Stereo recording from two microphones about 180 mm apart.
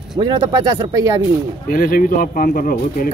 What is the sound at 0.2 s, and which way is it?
Speech, 20° right (ahead or behind).